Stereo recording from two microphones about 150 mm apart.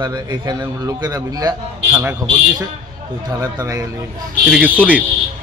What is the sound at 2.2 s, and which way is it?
A man's voice, 25° right (ahead or behind).